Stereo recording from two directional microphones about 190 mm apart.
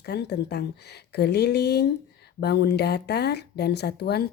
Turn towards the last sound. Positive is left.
turn(degrees=60)  # may be behind; listen again after turning